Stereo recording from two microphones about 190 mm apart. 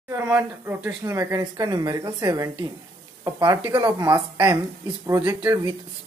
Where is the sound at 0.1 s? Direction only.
10° right (ahead or behind).